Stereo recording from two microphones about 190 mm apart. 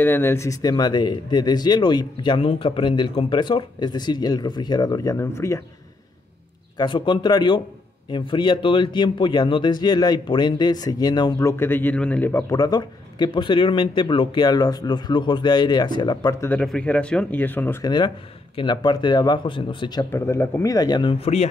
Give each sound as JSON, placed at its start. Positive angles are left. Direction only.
{"t": 0.0, "sound": "speech", "side_deg": 10}
{"t": 6.8, "sound": "speech", "side_deg": 25}
{"t": 16.4, "sound": "speech", "side_deg": 5}
{"t": 17.8, "sound": "speech", "side_deg": 25}